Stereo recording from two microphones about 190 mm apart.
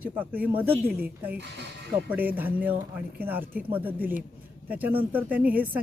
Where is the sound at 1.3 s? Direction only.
65° right (ahead or behind).